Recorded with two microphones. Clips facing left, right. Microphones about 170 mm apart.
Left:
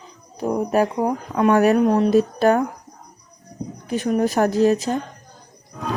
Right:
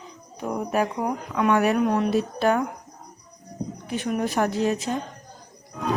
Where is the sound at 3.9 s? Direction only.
40° left (ahead or behind).